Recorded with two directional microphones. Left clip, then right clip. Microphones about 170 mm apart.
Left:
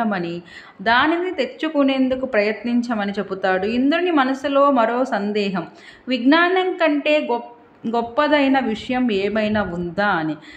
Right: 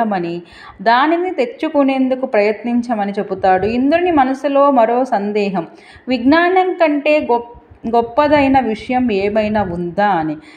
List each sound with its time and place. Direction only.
0.0 s a woman's voice: 10° right (ahead or behind)